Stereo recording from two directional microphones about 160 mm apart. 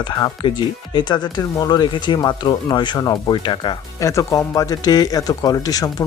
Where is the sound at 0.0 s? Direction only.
30° left (ahead or behind).